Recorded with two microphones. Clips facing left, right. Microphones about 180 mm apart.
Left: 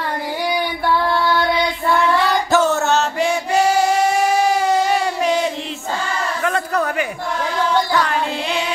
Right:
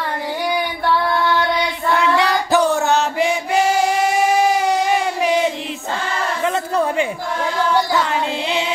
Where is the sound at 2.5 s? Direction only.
15° right (ahead or behind).